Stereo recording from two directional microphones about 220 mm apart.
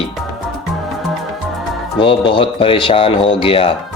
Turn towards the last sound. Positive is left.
turn(degrees=25)  # may be behind; listen again after turning